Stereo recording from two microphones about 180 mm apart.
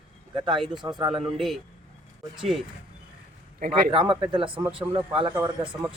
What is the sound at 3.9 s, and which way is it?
Speech, 30° right (ahead or behind).